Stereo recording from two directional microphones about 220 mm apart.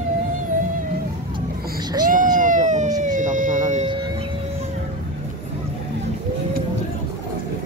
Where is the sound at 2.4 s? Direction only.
35° right (ahead or behind).